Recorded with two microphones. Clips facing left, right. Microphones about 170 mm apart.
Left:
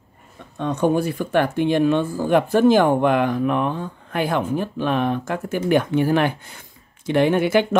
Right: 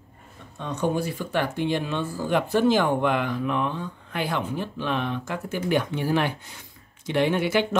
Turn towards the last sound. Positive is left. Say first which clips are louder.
# left 5 dB
turn(degrees=50)  # may be behind; listen again after turning